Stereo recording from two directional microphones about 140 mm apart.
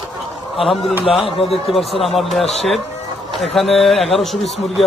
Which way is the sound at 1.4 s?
45° left (ahead or behind).